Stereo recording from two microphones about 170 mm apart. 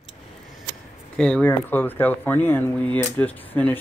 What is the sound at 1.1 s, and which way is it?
Speech, 5° left (ahead or behind).